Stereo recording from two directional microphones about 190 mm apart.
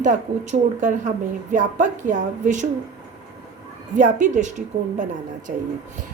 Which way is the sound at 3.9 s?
40° right (ahead or behind).